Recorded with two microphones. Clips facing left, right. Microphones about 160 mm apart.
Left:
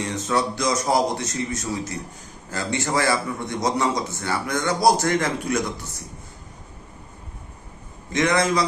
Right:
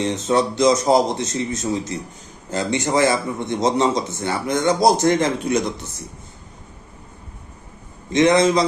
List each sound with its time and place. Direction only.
0.0 s a man's voice: 20° right (ahead or behind)
8.1 s a man's voice: 20° right (ahead or behind)